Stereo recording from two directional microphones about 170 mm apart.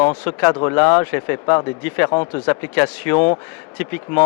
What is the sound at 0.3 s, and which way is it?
Speech, 15° left (ahead or behind).